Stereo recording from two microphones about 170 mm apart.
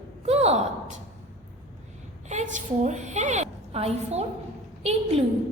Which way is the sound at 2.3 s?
45° right (ahead or behind).